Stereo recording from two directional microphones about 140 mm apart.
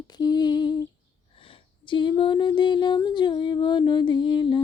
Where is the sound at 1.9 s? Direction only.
35° left (ahead or behind).